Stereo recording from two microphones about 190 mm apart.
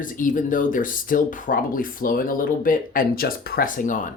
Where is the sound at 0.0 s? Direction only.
45° left (ahead or behind).